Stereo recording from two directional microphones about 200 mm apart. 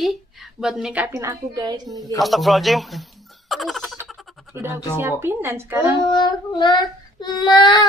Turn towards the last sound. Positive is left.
turn(degrees=20)  # may be behind; listen again after turning